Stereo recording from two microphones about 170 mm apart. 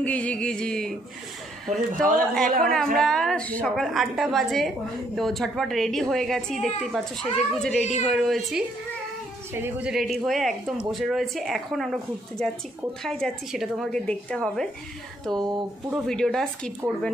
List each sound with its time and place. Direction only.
0.0 s a woman's voice: 10° left (ahead or behind)
1.7 s speech: 50° right (ahead or behind)
2.6 s a woman's voice: 5° left (ahead or behind)
9.5 s a woman's voice: 15° right (ahead or behind)
9.9 s a woman's voice: centre (ahead or behind)